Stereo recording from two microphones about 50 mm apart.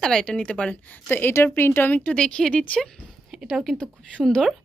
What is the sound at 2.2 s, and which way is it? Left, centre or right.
Speech, centre.